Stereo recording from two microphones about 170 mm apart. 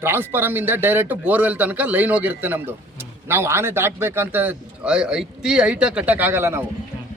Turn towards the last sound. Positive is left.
turn(degrees=-15)  # may be behind; listen again after turning